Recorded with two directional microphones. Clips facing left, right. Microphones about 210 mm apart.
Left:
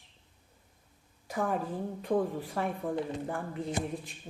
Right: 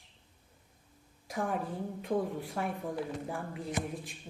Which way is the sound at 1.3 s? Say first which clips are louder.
Left 2 dB; centre (ahead or behind).